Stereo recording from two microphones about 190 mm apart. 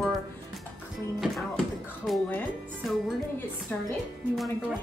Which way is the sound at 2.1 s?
Centre (ahead or behind).